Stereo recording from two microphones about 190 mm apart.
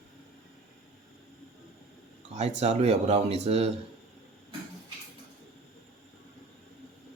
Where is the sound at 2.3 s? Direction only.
35° right (ahead or behind).